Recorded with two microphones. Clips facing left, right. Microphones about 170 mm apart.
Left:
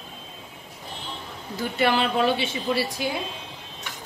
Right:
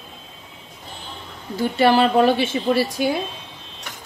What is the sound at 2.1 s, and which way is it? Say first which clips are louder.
Speech: right 6 dB; 50° right (ahead or behind).